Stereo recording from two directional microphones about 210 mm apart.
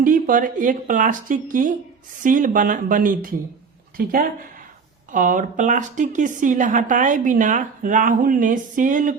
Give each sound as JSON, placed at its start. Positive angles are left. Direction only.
{"t": 0.0, "sound": "a woman's voice", "side_deg": -40}